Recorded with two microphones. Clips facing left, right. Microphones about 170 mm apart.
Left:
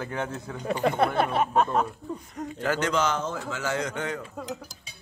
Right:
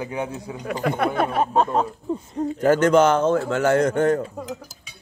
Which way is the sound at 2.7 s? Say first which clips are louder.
Right 10 dB; 50° right (ahead or behind).